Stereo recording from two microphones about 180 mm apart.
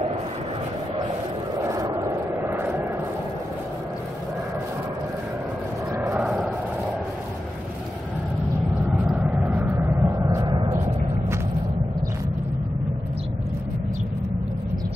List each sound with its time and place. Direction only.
1.6 s vehicle: 20° right (ahead or behind)
6.1 s vehicle: 5° right (ahead or behind)
8.9 s vehicle: 5° right (ahead or behind); by 10.9 s 20° right (ahead or behind)